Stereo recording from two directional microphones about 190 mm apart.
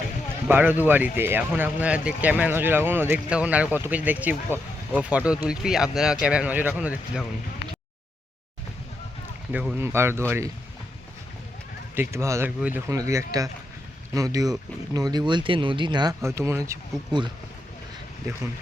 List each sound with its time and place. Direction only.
0.4 s speech: 10° right (ahead or behind)
9.5 s speech: 5° right (ahead or behind)
11.9 s speech: 15° right (ahead or behind)